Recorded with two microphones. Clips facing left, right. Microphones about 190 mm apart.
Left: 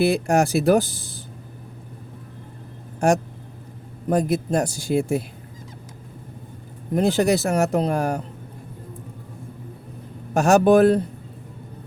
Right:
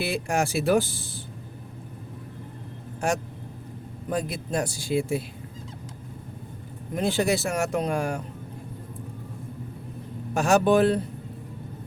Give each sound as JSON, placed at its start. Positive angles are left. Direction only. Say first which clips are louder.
{"t": 0.0, "sound": "speech", "louder": "left 7 dB", "side_deg": 40}
{"t": 4.1, "sound": "speech", "louder": "left 7 dB", "side_deg": 45}
{"t": 6.9, "sound": "speech", "louder": "left 5 dB", "side_deg": 40}
{"t": 10.3, "sound": "speech", "louder": "left 5 dB", "side_deg": 45}